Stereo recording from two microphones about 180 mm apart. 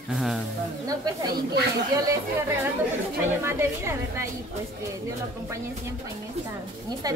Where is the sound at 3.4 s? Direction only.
15° right (ahead or behind).